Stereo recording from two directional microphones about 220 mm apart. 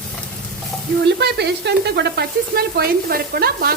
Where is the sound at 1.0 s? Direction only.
50° right (ahead or behind).